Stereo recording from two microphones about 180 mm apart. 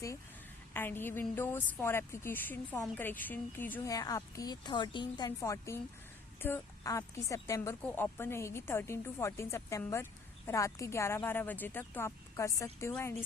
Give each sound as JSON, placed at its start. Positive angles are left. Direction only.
{"t": 0.7, "sound": "a woman's voice", "side_deg": 10}